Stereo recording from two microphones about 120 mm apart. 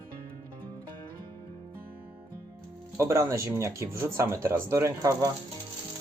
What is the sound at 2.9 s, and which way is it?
Speech, 25° right (ahead or behind).